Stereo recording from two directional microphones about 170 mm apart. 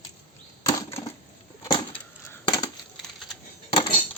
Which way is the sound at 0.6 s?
20° left (ahead or behind).